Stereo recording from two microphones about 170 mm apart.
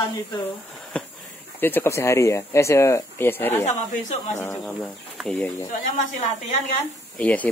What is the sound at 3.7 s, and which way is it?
Speech, 45° left (ahead or behind).